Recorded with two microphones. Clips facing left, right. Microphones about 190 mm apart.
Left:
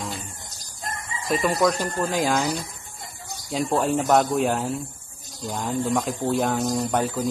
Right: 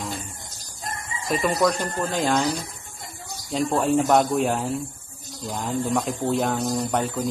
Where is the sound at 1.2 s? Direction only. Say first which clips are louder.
Even; centre (ahead or behind).